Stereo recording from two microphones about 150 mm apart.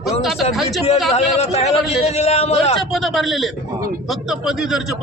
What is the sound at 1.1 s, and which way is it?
Speech, 45° left (ahead or behind).